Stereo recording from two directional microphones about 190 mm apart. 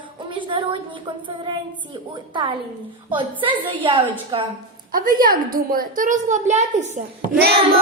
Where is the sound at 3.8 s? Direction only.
25° right (ahead or behind).